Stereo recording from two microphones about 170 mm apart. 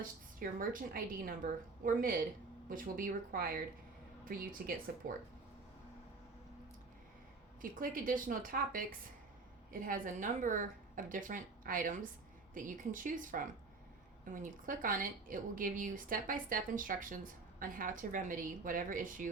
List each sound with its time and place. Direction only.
0.0 s a woman's voice: 55° right (ahead or behind)
7.6 s a woman's voice: 55° right (ahead or behind)